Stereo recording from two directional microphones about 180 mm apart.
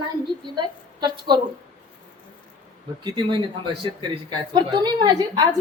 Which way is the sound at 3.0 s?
25° right (ahead or behind).